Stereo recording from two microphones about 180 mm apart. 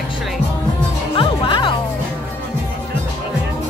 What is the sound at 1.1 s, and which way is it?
Music, 25° left (ahead or behind).